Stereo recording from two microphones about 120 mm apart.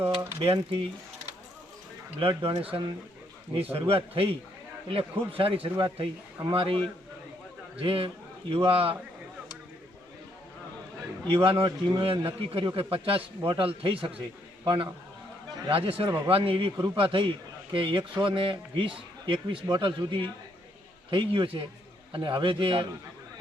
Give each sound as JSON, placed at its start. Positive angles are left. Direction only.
{"t": 0.4, "sound": "a man's voice", "side_deg": -45}
{"t": 2.1, "sound": "a man's voice", "side_deg": -50}
{"t": 11.3, "sound": "a man's voice", "side_deg": -45}